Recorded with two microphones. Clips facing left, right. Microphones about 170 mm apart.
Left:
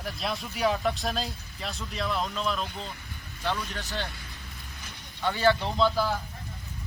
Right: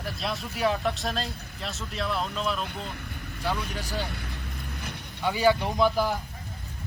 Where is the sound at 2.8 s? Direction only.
60° right (ahead or behind).